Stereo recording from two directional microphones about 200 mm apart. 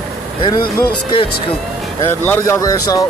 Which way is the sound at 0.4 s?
20° left (ahead or behind).